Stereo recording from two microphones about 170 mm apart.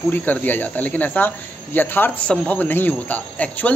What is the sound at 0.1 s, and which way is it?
A man's voice, 10° left (ahead or behind).